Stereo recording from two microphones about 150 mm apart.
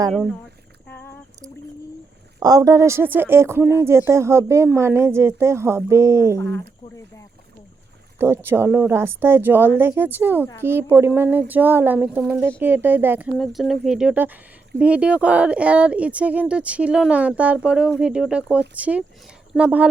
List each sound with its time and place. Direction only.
0.9 s a sound: 15° left (ahead or behind)
2.4 s speech: 25° right (ahead or behind)
6.3 s speech: 15° left (ahead or behind)
8.4 s speech: 15° right (ahead or behind)
13.3 s speech: centre (ahead or behind)